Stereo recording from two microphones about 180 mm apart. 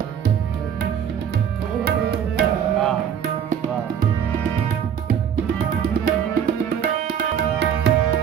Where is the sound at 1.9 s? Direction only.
60° right (ahead or behind).